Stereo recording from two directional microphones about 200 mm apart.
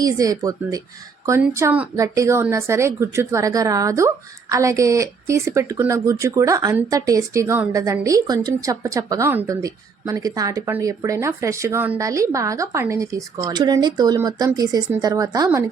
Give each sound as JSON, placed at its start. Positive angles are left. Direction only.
{"t": 0.0, "sound": "speech", "side_deg": -15}